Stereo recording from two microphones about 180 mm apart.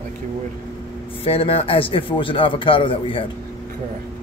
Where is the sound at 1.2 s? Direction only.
30° left (ahead or behind).